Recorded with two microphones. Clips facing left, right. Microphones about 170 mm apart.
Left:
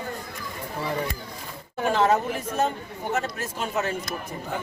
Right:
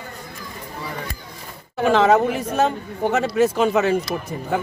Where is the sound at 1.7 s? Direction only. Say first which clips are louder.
Right 6 dB; 80° right.